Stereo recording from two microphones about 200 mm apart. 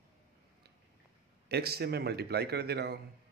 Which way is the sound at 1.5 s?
55° right (ahead or behind).